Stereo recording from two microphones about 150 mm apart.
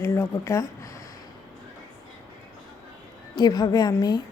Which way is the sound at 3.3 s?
30° left (ahead or behind).